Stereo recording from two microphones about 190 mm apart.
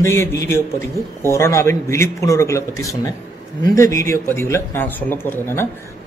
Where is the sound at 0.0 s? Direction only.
15° left (ahead or behind).